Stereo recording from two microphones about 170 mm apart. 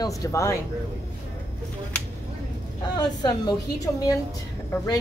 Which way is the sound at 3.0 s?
25° left (ahead or behind).